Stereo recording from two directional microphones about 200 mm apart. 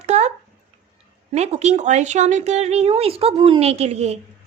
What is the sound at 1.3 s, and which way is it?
A woman's voice, 35° right (ahead or behind).